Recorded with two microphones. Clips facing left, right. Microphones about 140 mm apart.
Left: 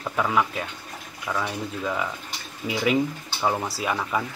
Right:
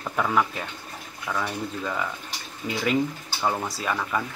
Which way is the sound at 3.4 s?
10° left (ahead or behind).